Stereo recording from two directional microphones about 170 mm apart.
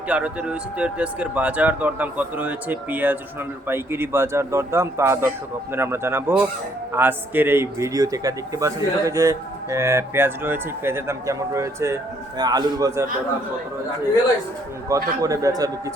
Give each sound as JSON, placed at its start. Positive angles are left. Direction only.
{"t": 0.1, "sound": "a man's voice", "side_deg": -10}
{"t": 14.8, "sound": "a man's voice", "side_deg": -20}